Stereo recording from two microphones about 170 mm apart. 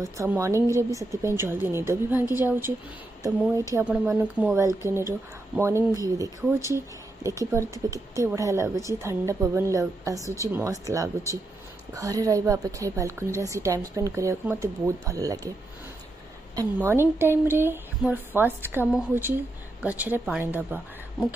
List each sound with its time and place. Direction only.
0.0 s a woman's voice: 15° right (ahead or behind)
6.0 s a woman's voice: 20° right (ahead or behind)
16.5 s a woman's voice: 15° right (ahead or behind)